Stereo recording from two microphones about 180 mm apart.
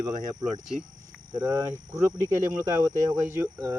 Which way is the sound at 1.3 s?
15° right (ahead or behind).